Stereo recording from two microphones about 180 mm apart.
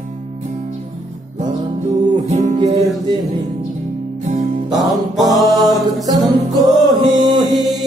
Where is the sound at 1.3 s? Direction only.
40° right (ahead or behind).